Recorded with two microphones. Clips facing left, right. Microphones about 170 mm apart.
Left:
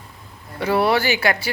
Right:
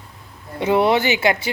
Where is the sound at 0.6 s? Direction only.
20° right (ahead or behind).